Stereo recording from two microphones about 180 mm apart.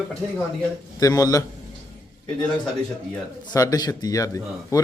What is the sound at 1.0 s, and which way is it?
Speech, 20° left (ahead or behind).